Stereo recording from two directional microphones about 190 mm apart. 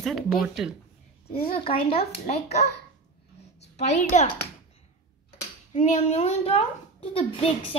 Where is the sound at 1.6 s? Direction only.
30° left (ahead or behind).